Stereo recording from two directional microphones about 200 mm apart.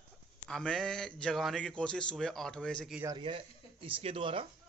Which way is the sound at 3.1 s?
25° right (ahead or behind).